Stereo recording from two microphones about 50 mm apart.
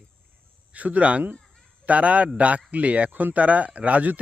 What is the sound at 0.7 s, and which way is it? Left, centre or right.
A man's voice, right.